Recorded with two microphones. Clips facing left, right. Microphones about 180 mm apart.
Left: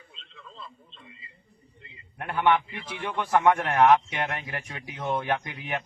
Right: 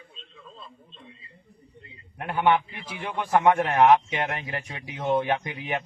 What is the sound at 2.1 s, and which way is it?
A man's voice, 20° right (ahead or behind).